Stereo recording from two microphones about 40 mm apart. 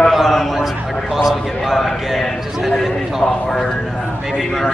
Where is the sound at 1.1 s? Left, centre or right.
Centre.